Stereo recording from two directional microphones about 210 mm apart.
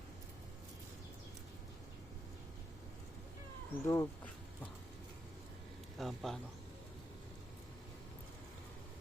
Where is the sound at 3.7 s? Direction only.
15° left (ahead or behind).